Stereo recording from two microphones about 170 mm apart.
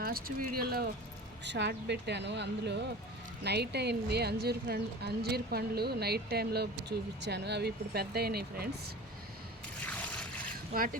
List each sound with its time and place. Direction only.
0.0 s speech: 60° right (ahead or behind)
1.5 s a woman's voice: 90° right
3.4 s speech: 75° right (ahead or behind)
9.8 s trickle: 10° left (ahead or behind)